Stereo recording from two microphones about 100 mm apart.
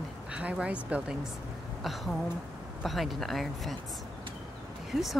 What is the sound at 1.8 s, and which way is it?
Speech, centre (ahead or behind).